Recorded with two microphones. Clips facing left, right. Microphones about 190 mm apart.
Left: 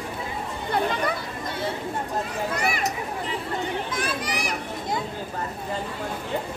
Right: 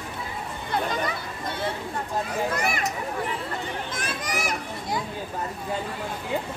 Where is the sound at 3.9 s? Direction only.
45° right (ahead or behind).